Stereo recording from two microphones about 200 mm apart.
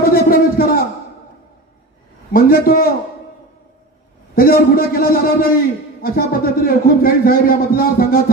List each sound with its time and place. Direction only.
0.0 s a sound: 45° left (ahead or behind)
2.3 s a man's voice: 45° left (ahead or behind)
4.4 s a man's voice: 50° left (ahead or behind)